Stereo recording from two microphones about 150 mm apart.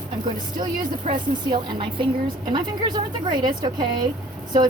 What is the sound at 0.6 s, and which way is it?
A woman's voice, 30° right (ahead or behind).